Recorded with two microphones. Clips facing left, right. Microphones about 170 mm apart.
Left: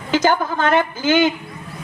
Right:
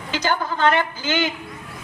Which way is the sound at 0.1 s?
50° left (ahead or behind).